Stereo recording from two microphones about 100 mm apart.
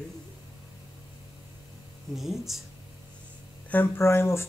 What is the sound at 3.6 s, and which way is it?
Speech, 20° left (ahead or behind).